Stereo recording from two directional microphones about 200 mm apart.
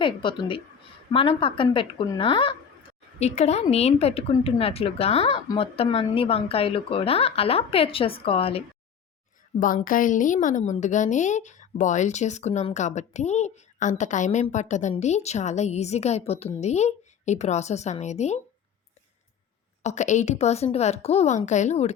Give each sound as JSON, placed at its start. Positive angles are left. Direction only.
{"t": 0.0, "sound": "speech", "side_deg": 25}
{"t": 9.6, "sound": "a woman's voice", "side_deg": 45}
{"t": 19.8, "sound": "a woman's voice", "side_deg": 35}